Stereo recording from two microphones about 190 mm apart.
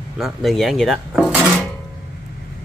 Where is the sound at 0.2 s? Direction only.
Centre (ahead or behind).